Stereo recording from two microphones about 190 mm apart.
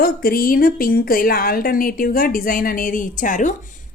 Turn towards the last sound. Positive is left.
turn(degrees=45)  # may be behind; listen again after turning